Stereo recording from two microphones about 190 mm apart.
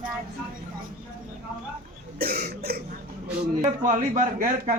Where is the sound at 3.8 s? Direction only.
40° right (ahead or behind).